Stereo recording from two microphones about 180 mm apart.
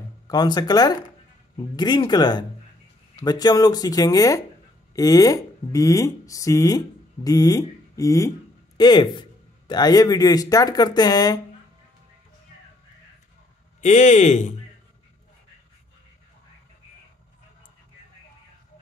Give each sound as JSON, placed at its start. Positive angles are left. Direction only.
{"t": 0.3, "sound": "speech", "side_deg": 20}
{"t": 13.7, "sound": "speech", "side_deg": 40}